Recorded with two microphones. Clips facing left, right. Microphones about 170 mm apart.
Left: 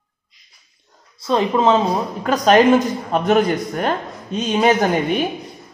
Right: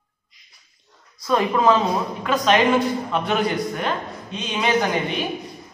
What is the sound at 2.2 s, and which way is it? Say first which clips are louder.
A man's voice: left 6 dB; 40° left (ahead or behind).